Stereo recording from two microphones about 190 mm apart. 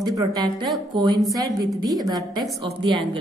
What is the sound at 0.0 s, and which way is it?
A woman's voice, 20° right (ahead or behind).